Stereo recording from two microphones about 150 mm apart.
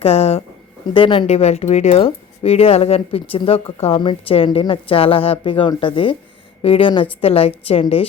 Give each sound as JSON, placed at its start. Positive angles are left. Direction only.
{"t": 0.0, "sound": "speech", "side_deg": 45}